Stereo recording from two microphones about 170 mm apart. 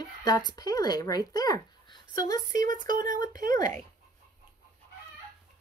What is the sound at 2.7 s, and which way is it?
Speech, 50° right (ahead or behind).